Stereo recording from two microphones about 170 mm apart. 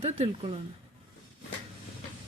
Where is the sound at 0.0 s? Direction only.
35° right (ahead or behind).